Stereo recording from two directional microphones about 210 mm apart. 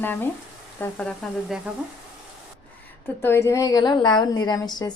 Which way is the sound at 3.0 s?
10° left (ahead or behind).